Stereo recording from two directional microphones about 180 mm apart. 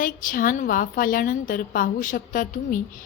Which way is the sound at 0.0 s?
50° left (ahead or behind).